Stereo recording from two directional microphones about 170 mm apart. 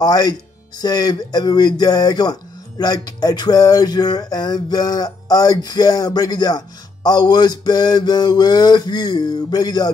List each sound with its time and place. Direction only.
0.0 s speech: 25° left (ahead or behind)